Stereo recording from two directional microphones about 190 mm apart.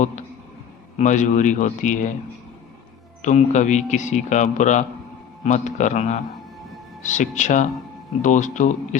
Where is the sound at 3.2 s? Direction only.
40° left (ahead or behind).